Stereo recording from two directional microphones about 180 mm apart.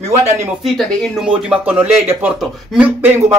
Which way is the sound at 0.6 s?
Centre (ahead or behind).